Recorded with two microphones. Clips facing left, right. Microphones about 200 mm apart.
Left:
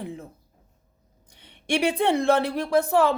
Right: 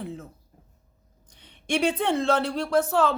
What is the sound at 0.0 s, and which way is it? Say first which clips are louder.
Speech: left 1 dB; 10° left (ahead or behind).